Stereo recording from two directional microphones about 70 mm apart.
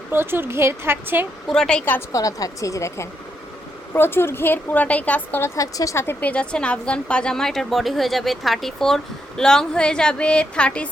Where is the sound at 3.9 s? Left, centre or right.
Left.